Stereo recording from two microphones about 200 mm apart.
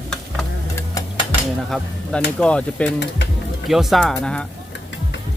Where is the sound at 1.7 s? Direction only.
Centre (ahead or behind).